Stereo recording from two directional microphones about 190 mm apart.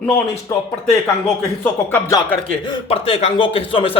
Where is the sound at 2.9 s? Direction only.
30° left (ahead or behind).